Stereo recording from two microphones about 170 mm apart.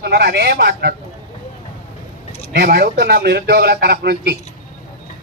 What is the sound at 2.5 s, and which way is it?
Speech, 70° right (ahead or behind).